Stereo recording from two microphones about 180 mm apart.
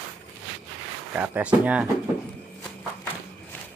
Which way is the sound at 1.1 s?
10° right (ahead or behind).